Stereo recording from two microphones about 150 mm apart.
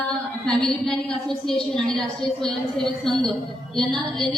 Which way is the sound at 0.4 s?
5° left (ahead or behind).